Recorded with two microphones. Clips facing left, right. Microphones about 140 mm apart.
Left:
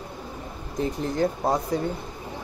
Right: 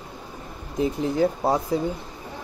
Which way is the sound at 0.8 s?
5° right (ahead or behind).